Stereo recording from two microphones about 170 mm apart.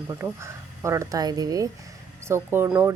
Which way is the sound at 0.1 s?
15° right (ahead or behind).